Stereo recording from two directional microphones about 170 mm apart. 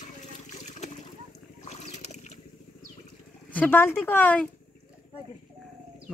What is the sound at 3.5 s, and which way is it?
Speech, 10° left (ahead or behind).